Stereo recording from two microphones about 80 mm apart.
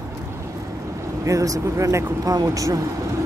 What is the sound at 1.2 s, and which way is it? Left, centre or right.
Speech, right.